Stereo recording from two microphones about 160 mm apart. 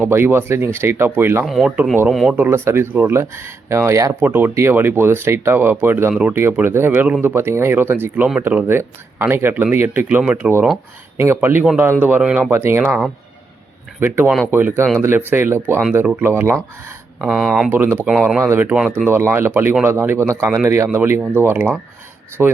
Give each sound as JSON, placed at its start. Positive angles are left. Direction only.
{"t": 0.0, "sound": "speech", "side_deg": -15}
{"t": 12.8, "sound": "speech", "side_deg": 0}
{"t": 14.0, "sound": "speech", "side_deg": -15}
{"t": 17.2, "sound": "speech", "side_deg": 0}
{"t": 17.7, "sound": "speech", "side_deg": -15}